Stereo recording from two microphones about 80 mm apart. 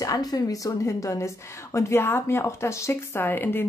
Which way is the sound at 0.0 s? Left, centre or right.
Left.